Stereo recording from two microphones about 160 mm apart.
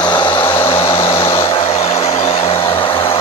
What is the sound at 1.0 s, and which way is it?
Vehicle, 35° left (ahead or behind).